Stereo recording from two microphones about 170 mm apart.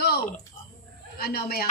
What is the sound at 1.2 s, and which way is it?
Speech, 70° left (ahead or behind).